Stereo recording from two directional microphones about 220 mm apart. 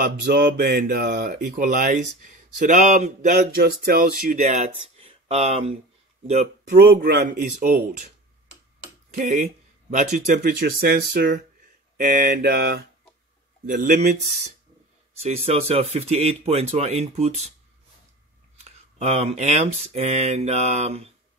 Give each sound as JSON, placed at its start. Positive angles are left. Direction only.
{"t": 0.0, "sound": "speech", "side_deg": -45}
{"t": 3.5, "sound": "speech", "side_deg": -45}
{"t": 4.8, "sound": "a sound", "side_deg": -25}
{"t": 6.2, "sound": "speech", "side_deg": -30}
{"t": 6.9, "sound": "speech", "side_deg": -45}
{"t": 9.1, "sound": "speech", "side_deg": -35}
{"t": 15.2, "sound": "speech", "side_deg": -30}
{"t": 18.6, "sound": "speech", "side_deg": -30}